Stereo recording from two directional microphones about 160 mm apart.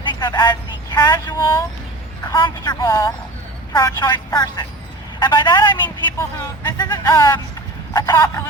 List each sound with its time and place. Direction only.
0.1 s vehicle: 25° left (ahead or behind)
0.9 s a woman's voice: 25° left (ahead or behind)
5.8 s speech: 15° left (ahead or behind)
6.7 s a woman's voice: 25° left (ahead or behind)